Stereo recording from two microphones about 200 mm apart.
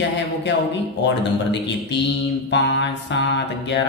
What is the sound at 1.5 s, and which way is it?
Speech, 60° left (ahead or behind).